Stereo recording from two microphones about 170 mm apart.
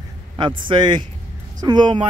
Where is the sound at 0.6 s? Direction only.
25° right (ahead or behind).